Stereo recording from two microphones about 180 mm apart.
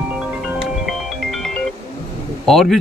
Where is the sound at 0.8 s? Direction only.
Centre (ahead or behind).